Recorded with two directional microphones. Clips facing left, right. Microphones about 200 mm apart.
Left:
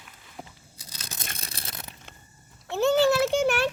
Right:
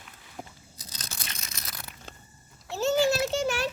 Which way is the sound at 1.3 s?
30° left (ahead or behind).